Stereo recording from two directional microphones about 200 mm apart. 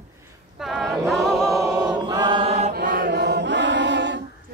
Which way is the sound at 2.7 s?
50° right (ahead or behind).